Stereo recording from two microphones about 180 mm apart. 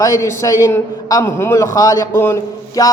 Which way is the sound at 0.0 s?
15° left (ahead or behind).